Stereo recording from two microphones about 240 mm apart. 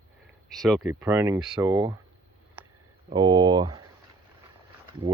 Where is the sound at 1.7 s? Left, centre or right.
Centre.